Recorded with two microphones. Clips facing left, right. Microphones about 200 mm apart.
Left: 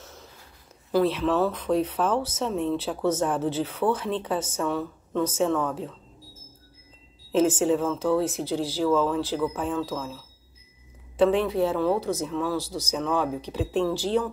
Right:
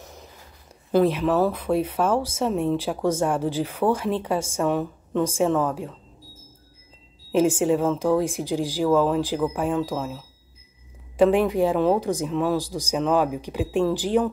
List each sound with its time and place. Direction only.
0.0 s a sound: 15° right (ahead or behind)
0.9 s speech: 15° right (ahead or behind)
7.3 s speech: 10° right (ahead or behind)